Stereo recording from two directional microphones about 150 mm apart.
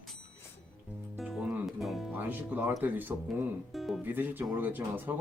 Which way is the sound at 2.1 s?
10° right (ahead or behind).